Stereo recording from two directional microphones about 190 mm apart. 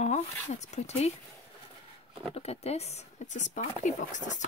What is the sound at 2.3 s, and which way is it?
Speech, 35° left (ahead or behind).